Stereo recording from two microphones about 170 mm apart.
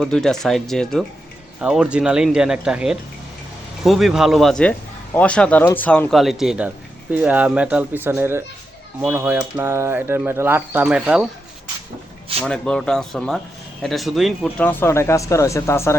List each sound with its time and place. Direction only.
0.0 s speech: 5° left (ahead or behind)
12.5 s speech: 5° left (ahead or behind)
14.4 s speech: 10° left (ahead or behind)